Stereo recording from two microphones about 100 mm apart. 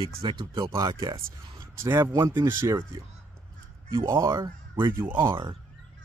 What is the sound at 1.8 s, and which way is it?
Speech, 25° right (ahead or behind).